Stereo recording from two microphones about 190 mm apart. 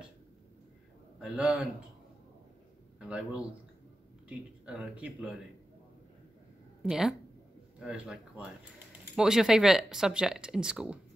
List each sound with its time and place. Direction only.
1.2 s speech: 5° right (ahead or behind)
3.0 s speech: 5° right (ahead or behind)
6.8 s speech: centre (ahead or behind)